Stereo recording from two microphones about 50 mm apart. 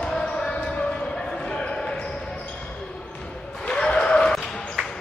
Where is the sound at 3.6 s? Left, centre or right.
Centre.